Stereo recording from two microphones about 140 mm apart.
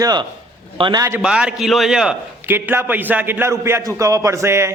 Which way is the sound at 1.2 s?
5° right (ahead or behind).